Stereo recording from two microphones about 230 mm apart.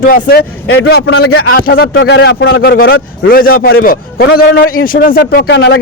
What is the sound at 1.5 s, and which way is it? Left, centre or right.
Speech, left.